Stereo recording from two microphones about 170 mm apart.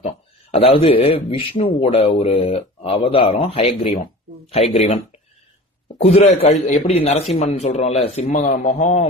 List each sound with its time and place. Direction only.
0.5 s speech: 35° left (ahead or behind)
6.0 s speech: 35° left (ahead or behind)